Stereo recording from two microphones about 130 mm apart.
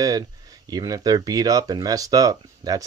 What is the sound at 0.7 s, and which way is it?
Speech, 30° right (ahead or behind).